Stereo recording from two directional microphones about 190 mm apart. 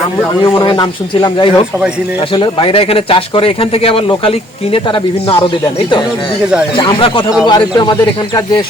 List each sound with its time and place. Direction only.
0.4 s speech: 25° left (ahead or behind)
6.4 s speech: 5° right (ahead or behind)
6.7 s speech: 25° left (ahead or behind)